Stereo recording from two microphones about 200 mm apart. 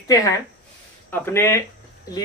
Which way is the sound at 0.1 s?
15° left (ahead or behind).